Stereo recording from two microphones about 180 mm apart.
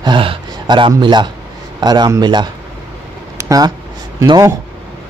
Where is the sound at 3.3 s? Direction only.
20° right (ahead or behind).